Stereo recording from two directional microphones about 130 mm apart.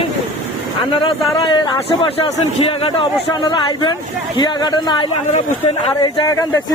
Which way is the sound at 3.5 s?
35° left (ahead or behind).